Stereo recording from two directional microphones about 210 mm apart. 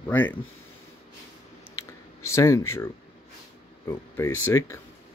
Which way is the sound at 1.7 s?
85° left.